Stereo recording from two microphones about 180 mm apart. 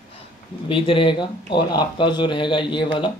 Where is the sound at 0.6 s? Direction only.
30° left (ahead or behind).